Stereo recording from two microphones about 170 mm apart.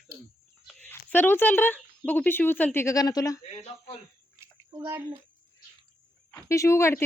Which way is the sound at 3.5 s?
40° left (ahead or behind).